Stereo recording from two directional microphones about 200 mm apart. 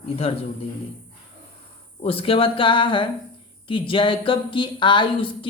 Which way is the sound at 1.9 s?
25° left (ahead or behind).